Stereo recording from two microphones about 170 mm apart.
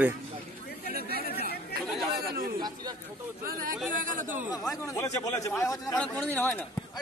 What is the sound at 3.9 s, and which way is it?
Chatter, 50° right (ahead or behind).